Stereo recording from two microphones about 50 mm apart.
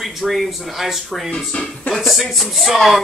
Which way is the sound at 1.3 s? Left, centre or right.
Centre.